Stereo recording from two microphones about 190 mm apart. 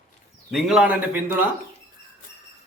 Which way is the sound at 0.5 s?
5° right (ahead or behind).